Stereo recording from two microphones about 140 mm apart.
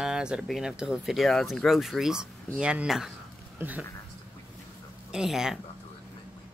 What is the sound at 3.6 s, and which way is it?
Speech, 15° right (ahead or behind).